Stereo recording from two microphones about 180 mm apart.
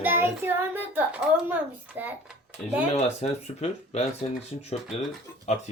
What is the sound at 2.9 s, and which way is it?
Speech, 35° left (ahead or behind).